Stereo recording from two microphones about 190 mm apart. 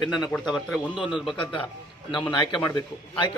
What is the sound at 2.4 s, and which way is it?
Speech, 20° left (ahead or behind).